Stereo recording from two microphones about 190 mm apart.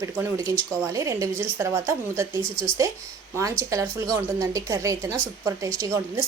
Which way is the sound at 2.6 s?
5° left (ahead or behind).